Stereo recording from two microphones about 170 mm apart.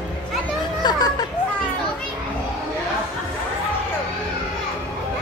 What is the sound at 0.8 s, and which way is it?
Children playing, 25° left (ahead or behind).